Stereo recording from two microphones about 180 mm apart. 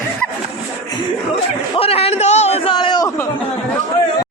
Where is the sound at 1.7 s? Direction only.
30° left (ahead or behind).